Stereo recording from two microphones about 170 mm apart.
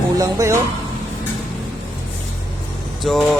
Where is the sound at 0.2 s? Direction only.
20° right (ahead or behind).